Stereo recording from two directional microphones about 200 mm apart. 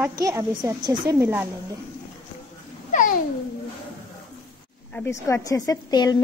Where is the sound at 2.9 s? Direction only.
40° left (ahead or behind).